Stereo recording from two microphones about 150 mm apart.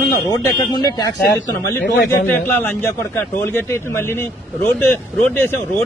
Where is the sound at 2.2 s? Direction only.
10° left (ahead or behind).